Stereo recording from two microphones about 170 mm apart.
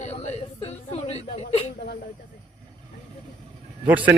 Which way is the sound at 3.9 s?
10° right (ahead or behind).